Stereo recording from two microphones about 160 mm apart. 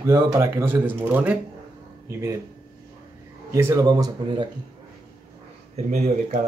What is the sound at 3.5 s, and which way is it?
Speech, 15° right (ahead or behind).